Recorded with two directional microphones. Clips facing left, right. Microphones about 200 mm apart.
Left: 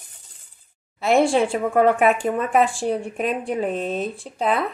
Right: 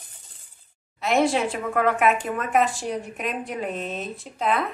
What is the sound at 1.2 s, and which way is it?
A woman's voice, 30° left (ahead or behind).